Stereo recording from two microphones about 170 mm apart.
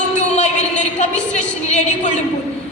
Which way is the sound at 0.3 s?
45° left (ahead or behind).